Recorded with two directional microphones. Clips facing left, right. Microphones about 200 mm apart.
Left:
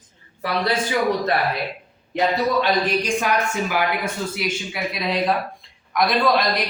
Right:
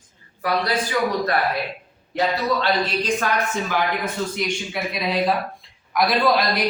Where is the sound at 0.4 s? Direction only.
25° left (ahead or behind).